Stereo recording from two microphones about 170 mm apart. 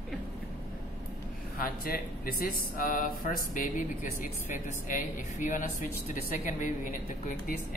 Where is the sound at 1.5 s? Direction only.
60° left (ahead or behind).